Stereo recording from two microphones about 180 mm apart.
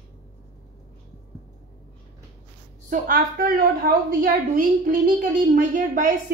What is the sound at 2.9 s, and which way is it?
A woman's voice, 50° right (ahead or behind).